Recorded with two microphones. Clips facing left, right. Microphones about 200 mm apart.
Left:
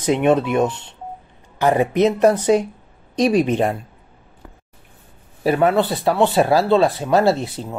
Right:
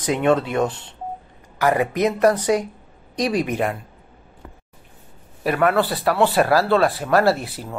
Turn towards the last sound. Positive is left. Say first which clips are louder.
# left 2 dB
turn(degrees=25)  # may be behind; listen again after turning